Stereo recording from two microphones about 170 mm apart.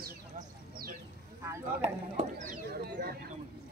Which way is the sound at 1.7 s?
45° right (ahead or behind).